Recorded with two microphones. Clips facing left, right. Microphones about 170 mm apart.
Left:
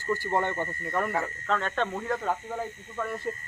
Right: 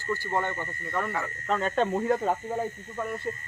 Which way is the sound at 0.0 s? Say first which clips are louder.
Left 2 dB; 15° left (ahead or behind).